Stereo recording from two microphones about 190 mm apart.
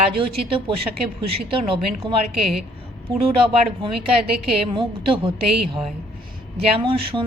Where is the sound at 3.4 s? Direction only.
25° right (ahead or behind).